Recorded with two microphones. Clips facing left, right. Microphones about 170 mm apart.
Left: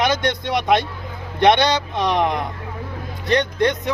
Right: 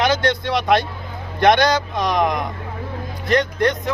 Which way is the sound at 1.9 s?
15° right (ahead or behind).